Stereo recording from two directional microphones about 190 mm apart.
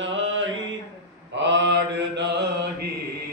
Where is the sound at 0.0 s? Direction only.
85° right.